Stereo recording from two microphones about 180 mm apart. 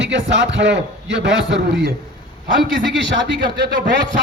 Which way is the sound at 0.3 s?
90° right.